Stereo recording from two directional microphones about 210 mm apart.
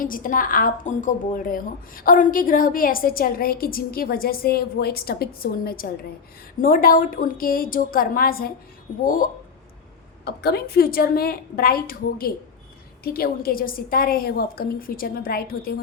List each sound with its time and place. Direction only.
0.0 s a woman's voice: 40° left (ahead or behind)